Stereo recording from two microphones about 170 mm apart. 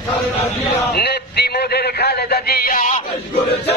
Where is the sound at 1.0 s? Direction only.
70° left (ahead or behind); by 3.0 s 50° left (ahead or behind).